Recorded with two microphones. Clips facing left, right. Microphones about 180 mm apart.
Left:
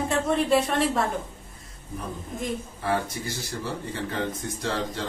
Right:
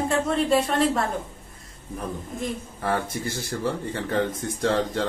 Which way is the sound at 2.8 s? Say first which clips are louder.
Right 2 dB; 55° right (ahead or behind).